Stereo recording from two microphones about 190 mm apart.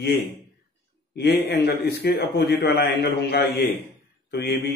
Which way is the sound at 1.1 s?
60° left (ahead or behind).